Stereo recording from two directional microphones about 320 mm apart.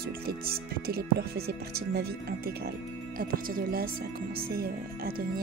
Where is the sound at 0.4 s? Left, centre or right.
Right.